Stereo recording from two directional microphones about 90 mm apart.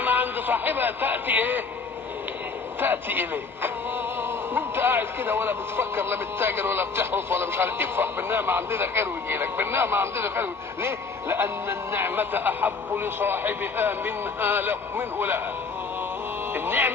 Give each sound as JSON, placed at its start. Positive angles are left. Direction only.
{"t": 0.0, "sound": "speech", "side_deg": -20}
{"t": 2.8, "sound": "a man's voice", "side_deg": -20}
{"t": 16.5, "sound": "a man's voice", "side_deg": -20}